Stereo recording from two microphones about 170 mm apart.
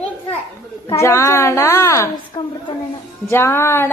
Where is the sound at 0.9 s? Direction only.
15° left (ahead or behind).